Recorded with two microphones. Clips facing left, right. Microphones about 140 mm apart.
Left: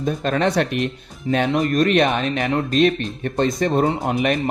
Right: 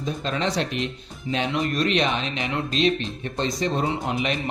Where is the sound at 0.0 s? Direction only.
55° left (ahead or behind).